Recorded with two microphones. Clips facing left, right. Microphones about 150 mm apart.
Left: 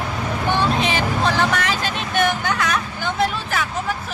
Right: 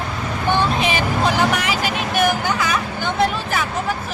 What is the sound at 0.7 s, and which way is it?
Vehicle, 10° right (ahead or behind).